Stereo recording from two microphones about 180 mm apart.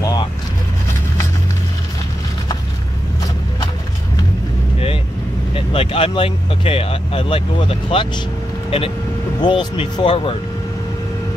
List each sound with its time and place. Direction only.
0.0 s vehicle: 20° left (ahead or behind)
5.5 s speech: 30° left (ahead or behind)